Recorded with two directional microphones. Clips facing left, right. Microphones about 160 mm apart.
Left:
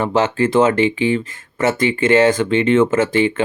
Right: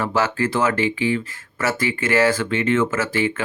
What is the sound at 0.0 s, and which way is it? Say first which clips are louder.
Speech: left 5 dB; 25° left (ahead or behind).